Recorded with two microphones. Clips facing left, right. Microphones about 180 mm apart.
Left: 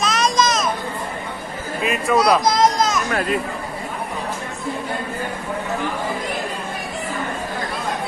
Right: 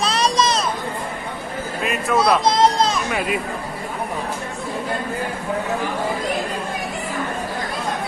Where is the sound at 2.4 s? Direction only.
30° right (ahead or behind).